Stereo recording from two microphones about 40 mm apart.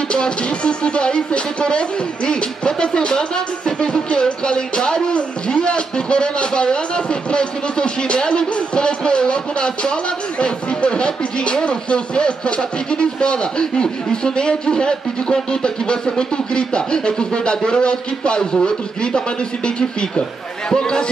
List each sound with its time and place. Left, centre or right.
0.1 s speech: left